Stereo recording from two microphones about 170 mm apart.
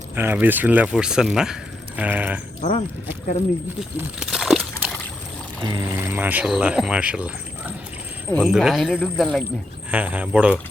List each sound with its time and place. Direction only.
0.2 s speech: 10° right (ahead or behind)
2.6 s speech: 40° left (ahead or behind)
3.8 s a sound: centre (ahead or behind)
5.6 s speech: 20° right (ahead or behind)
8.4 s speech: centre (ahead or behind)